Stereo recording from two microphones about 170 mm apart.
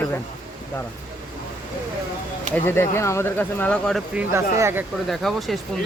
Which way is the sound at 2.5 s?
15° left (ahead or behind).